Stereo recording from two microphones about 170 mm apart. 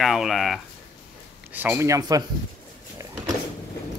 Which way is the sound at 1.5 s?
10° right (ahead or behind).